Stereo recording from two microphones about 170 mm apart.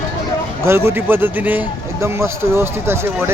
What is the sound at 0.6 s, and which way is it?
A man's voice, 15° right (ahead or behind).